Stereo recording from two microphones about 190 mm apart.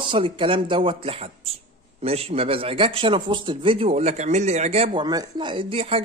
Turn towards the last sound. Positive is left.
turn(degrees=-30)  # may be behind; listen again after turning